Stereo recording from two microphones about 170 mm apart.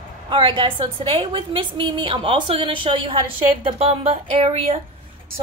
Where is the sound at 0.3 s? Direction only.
30° right (ahead or behind).